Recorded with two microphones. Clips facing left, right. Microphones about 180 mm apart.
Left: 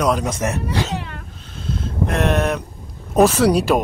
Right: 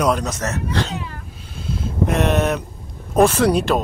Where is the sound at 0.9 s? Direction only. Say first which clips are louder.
Left 1 dB; 70° left (ahead or behind).